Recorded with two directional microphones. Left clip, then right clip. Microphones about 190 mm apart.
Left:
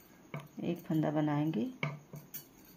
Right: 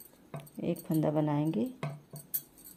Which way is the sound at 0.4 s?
35° right (ahead or behind).